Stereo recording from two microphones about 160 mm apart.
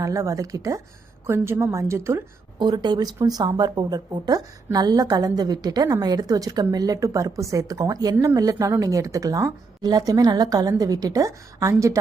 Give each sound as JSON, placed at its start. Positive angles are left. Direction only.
{"t": 0.0, "sound": "a woman's voice", "side_deg": -20}